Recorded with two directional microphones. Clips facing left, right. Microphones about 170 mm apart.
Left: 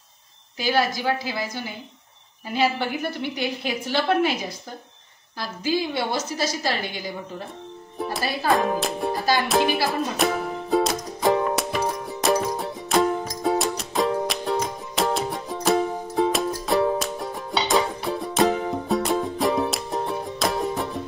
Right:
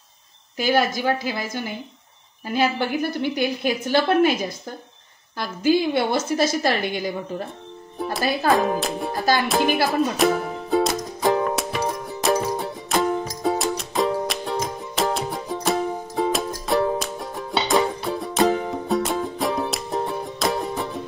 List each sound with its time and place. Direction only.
0.6 s a woman's voice: 50° right (ahead or behind)
3.2 s a woman's voice: 45° right (ahead or behind)
5.4 s a woman's voice: 55° right (ahead or behind)
8.0 s speech: centre (ahead or behind)
9.8 s music: centre (ahead or behind)